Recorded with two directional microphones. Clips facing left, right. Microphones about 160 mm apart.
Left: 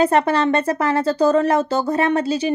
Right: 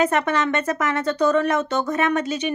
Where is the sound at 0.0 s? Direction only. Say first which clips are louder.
Left 4 dB; 30° left (ahead or behind).